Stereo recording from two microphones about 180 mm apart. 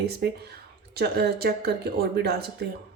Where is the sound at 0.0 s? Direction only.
65° right (ahead or behind).